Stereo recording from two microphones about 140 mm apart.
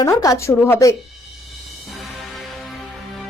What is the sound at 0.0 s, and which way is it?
Speech, 25° left (ahead or behind).